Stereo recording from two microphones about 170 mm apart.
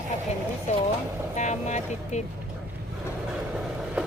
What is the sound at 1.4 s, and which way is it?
Speech, 45° left (ahead or behind).